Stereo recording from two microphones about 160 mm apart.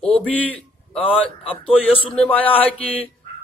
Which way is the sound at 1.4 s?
35° left (ahead or behind).